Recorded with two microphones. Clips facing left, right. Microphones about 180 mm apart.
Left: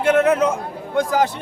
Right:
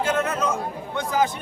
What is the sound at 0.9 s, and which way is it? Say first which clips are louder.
Speech: left 5 dB; 40° left (ahead or behind).